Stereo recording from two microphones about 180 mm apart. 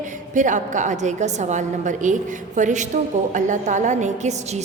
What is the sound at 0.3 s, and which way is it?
A woman's voice, 45° right (ahead or behind).